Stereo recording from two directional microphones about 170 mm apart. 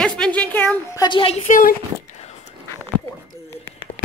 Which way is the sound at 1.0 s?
30° left (ahead or behind).